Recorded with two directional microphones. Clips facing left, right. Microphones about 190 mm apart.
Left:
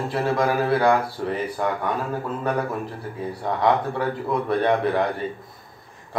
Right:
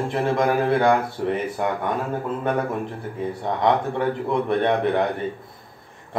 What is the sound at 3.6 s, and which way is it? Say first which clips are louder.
Speech: right 1 dB; 25° right (ahead or behind).